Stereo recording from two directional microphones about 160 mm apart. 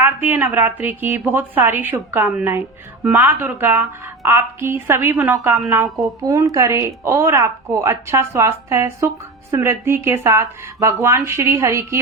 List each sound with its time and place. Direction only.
0.0 s a woman's voice: 10° right (ahead or behind)